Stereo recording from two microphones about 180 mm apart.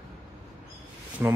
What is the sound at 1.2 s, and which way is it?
Speech, 10° right (ahead or behind).